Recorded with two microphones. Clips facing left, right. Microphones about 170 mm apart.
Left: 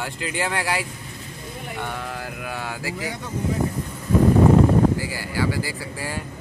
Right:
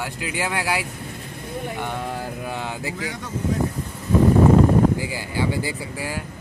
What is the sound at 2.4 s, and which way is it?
Speech, 20° right (ahead or behind).